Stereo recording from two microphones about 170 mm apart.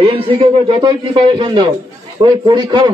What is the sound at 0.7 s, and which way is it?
A man's voice, 30° right (ahead or behind).